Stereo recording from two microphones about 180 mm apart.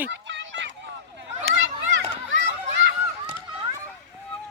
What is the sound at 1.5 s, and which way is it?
Children playing, 90° right.